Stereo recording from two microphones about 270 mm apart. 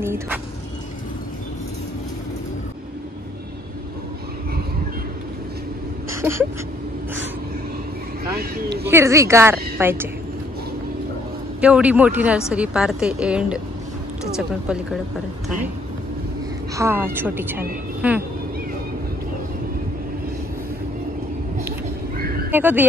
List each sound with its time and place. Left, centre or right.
0.0 s a woman's voice: centre
6.2 s a woman's voice: centre
8.4 s speech: right
8.8 s a woman's voice: centre
11.6 s a woman's voice: centre
16.7 s a woman's voice: centre
21.6 s a sound: right
22.5 s speech: centre